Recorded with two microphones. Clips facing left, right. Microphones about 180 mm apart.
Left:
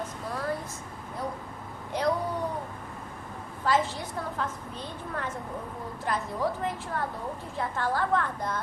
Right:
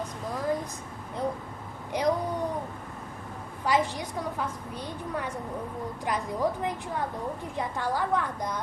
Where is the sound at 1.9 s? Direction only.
15° right (ahead or behind).